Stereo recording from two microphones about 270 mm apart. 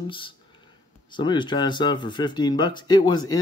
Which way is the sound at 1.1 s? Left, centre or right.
Centre.